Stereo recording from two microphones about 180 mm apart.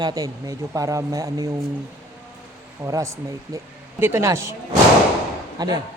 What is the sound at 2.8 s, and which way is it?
Speech, 15° right (ahead or behind).